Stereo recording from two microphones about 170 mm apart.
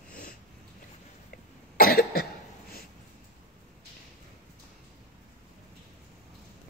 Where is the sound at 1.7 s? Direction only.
65° left (ahead or behind).